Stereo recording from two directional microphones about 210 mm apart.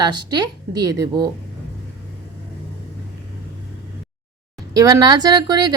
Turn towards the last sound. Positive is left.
turn(degrees=-20)  # may be behind; listen again after turning